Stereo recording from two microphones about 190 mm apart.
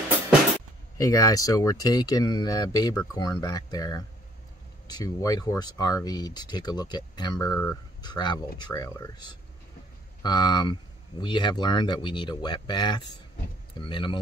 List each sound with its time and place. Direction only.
0.9 s speech: 15° left (ahead or behind)
10.2 s speech: 20° left (ahead or behind)